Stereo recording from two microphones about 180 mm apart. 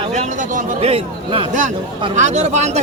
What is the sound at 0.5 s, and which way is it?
A man's voice, 35° right (ahead or behind).